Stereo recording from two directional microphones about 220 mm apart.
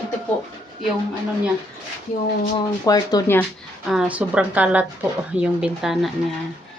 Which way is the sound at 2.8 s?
15° left (ahead or behind).